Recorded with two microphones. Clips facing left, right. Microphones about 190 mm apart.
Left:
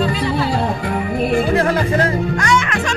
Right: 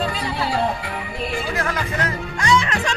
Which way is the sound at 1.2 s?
55° left (ahead or behind).